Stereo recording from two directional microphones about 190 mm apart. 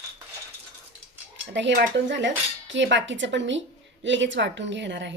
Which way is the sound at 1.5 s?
70° right (ahead or behind).